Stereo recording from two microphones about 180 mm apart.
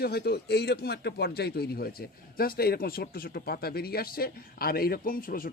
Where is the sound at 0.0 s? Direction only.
60° left (ahead or behind).